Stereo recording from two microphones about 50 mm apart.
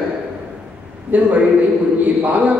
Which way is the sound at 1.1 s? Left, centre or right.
Right.